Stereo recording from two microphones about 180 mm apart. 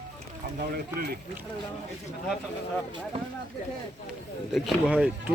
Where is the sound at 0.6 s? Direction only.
60° right (ahead or behind).